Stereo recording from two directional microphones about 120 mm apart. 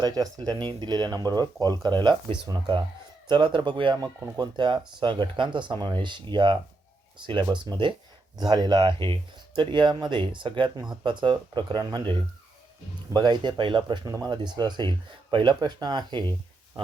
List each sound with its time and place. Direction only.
0.0 s speech: 35° right (ahead or behind)